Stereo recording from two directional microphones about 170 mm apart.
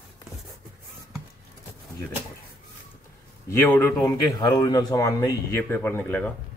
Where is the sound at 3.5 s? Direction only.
15° left (ahead or behind).